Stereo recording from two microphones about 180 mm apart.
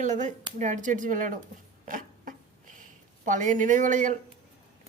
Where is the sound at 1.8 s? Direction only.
50° right (ahead or behind).